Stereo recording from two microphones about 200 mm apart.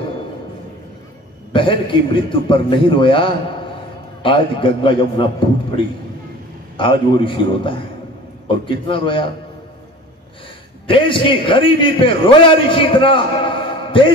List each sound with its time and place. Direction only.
1.5 s a man's voice: 25° left (ahead or behind)
6.8 s a man's voice: 25° left (ahead or behind)
10.9 s a man's voice: 25° left (ahead or behind)